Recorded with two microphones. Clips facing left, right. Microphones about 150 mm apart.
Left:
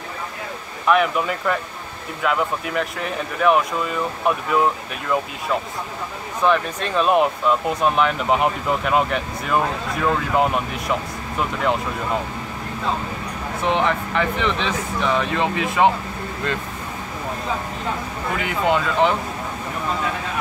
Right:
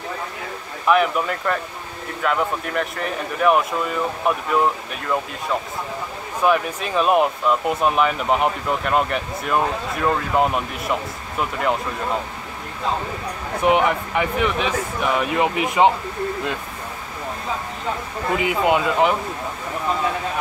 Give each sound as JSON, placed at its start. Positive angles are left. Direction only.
{"t": 0.8, "sound": "speech", "side_deg": 0}
{"t": 6.4, "sound": "speech", "side_deg": -5}
{"t": 13.7, "sound": "speech", "side_deg": -15}
{"t": 18.4, "sound": "speech", "side_deg": -15}